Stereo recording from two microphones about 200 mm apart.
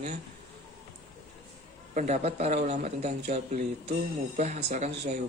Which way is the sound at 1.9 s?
35° right (ahead or behind).